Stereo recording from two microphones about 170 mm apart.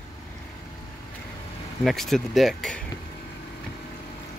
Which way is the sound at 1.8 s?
Centre (ahead or behind).